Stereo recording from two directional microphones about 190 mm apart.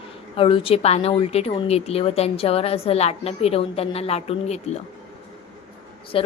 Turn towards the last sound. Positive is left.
turn(degrees=30)  # may be behind; listen again after turning